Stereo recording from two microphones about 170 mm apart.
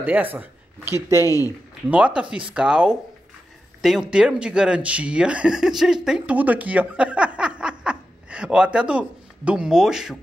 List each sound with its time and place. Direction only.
0.0 s speech: 10° right (ahead or behind)
1.2 s speech: 20° left (ahead or behind)
1.9 s speech: 10° right (ahead or behind)